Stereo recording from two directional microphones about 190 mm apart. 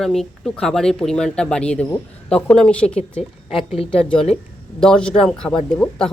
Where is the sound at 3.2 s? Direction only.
30° left (ahead or behind).